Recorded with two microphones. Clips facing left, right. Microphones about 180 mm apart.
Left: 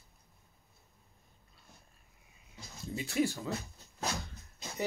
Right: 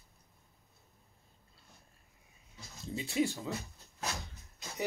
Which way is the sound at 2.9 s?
20° right (ahead or behind).